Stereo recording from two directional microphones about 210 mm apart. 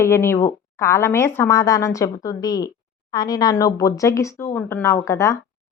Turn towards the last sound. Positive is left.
turn(degrees=15)  # may be behind; listen again after turning